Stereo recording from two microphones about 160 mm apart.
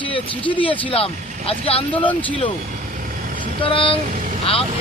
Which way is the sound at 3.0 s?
55° right (ahead or behind).